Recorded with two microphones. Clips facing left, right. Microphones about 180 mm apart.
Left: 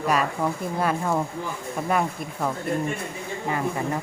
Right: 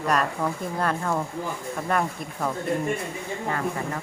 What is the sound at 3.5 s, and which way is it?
Speech, 15° left (ahead or behind).